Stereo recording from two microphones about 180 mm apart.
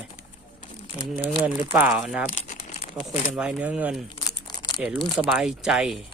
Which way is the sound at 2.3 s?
45° left (ahead or behind).